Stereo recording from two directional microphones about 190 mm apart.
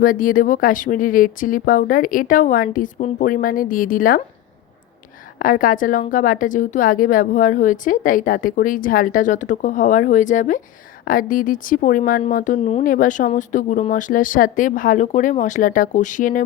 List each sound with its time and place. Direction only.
0.0 s a woman's voice: 45° left (ahead or behind)
5.4 s a woman's voice: 45° left (ahead or behind)
12.9 s a woman's voice: 45° left (ahead or behind)